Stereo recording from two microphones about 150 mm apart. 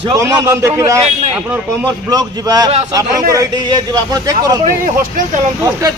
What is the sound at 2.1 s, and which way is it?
Speech, 25° right (ahead or behind).